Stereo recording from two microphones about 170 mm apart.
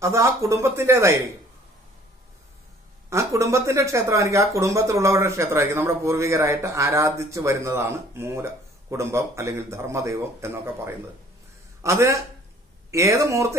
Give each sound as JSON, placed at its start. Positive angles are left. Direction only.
{"t": 0.0, "sound": "speech", "side_deg": -15}
{"t": 3.1, "sound": "speech", "side_deg": -15}